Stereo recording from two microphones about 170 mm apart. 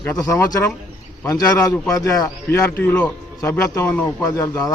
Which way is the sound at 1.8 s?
20° left (ahead or behind).